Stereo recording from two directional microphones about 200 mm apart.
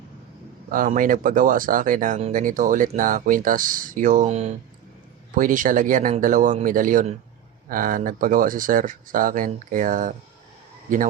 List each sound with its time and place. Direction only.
0.7 s speech: 45° right (ahead or behind)